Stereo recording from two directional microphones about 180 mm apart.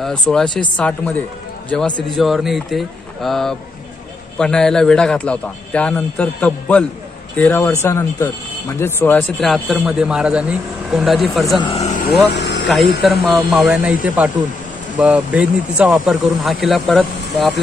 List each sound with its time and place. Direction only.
0.0 s speech: 5° left (ahead or behind)
9.4 s speech: centre (ahead or behind)
11.6 s speech: 35° left (ahead or behind)
12.3 s speech: 70° left (ahead or behind)
13.3 s speech: centre (ahead or behind)